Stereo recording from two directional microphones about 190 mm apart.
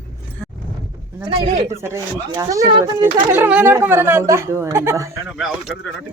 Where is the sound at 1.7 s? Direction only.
15° right (ahead or behind).